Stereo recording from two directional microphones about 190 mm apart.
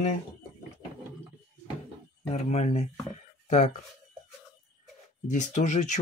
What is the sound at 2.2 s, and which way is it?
Speech, 35° left (ahead or behind).